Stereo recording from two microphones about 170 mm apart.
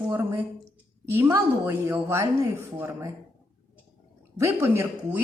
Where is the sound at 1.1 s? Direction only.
15° right (ahead or behind).